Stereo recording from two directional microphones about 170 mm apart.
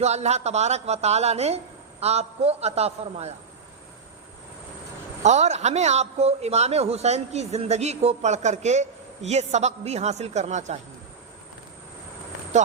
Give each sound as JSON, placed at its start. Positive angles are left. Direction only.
{"t": 0.0, "sound": "a man's voice", "side_deg": -40}
{"t": 5.2, "sound": "a man's voice", "side_deg": -40}